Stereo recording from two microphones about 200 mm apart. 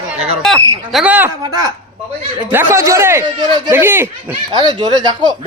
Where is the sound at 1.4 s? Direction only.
20° right (ahead or behind).